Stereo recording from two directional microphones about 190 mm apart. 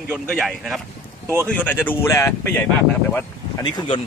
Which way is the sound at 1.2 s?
15° right (ahead or behind).